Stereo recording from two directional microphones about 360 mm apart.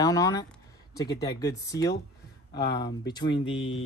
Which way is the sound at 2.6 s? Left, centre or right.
Left.